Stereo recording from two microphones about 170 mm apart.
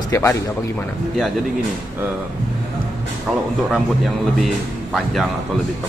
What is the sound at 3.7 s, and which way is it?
Speech, centre (ahead or behind).